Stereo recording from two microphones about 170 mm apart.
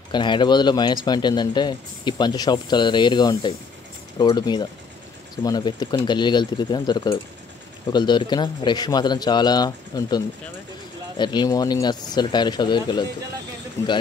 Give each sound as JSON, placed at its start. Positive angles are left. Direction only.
{"t": 0.1, "sound": "a man's voice", "side_deg": 25}
{"t": 13.8, "sound": "speech", "side_deg": 15}